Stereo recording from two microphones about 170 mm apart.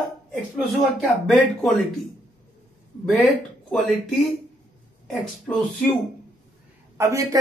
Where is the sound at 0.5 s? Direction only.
Centre (ahead or behind).